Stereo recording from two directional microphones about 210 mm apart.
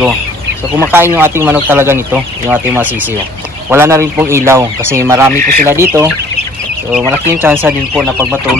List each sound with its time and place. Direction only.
0.7 s speech: 10° right (ahead or behind)
5.3 s speech: 40° right (ahead or behind)
5.7 s speech: 10° right (ahead or behind)